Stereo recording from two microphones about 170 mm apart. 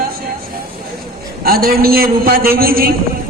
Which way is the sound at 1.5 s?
60° right (ahead or behind).